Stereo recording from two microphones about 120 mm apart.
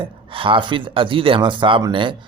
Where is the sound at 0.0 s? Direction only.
45° right (ahead or behind).